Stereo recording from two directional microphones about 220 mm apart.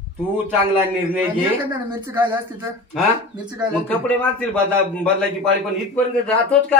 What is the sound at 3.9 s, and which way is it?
A man's voice, 5° left (ahead or behind).